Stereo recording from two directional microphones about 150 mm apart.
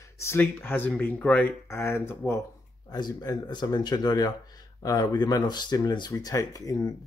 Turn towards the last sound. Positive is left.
turn(degrees=20)  # may be behind; listen again after turning